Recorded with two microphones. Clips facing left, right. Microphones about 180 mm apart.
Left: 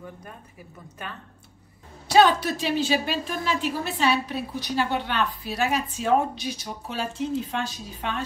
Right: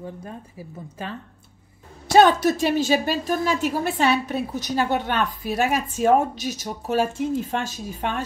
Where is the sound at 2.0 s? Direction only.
50° right (ahead or behind).